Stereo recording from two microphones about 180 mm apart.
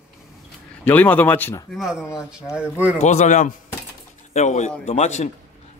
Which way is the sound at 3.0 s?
40° left (ahead or behind).